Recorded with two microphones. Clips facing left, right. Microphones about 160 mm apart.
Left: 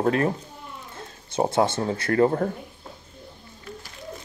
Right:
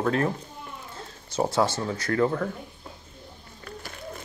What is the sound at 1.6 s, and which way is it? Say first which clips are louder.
Speech: left 3 dB; 25° left (ahead or behind).